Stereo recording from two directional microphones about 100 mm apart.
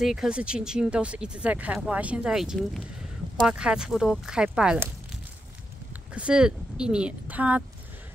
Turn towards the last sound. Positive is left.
turn(degrees=-15)  # may be behind; listen again after turning